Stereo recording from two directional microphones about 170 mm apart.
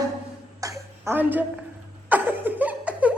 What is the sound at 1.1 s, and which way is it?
Speech, 10° right (ahead or behind).